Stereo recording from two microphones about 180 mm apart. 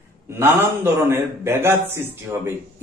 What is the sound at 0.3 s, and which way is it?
A man's voice, 15° right (ahead or behind).